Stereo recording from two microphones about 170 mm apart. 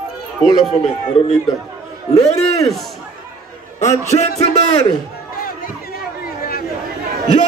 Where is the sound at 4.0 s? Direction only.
40° left (ahead or behind).